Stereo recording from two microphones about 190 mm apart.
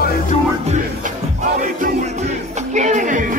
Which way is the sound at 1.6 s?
45° right (ahead or behind).